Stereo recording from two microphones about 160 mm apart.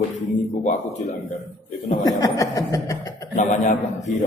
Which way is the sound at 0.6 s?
50° left (ahead or behind).